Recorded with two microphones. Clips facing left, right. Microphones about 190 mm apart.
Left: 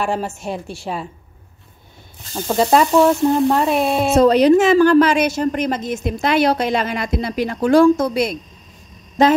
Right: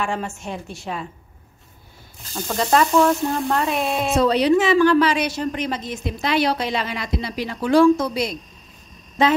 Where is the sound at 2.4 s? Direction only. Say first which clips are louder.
Left 4 dB; 30° left (ahead or behind).